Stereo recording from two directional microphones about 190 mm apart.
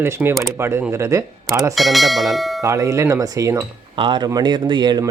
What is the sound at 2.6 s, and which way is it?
Speech, 15° right (ahead or behind).